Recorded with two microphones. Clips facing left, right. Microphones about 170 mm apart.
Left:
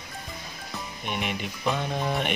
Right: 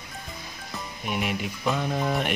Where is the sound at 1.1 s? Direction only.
5° right (ahead or behind).